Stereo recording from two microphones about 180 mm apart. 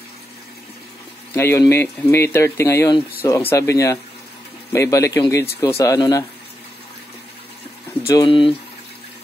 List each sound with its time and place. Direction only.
1.3 s speech: 15° left (ahead or behind)
8.0 s speech: 20° left (ahead or behind)